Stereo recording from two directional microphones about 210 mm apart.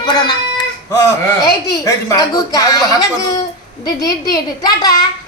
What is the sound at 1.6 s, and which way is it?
A woman's voice, 15° left (ahead or behind).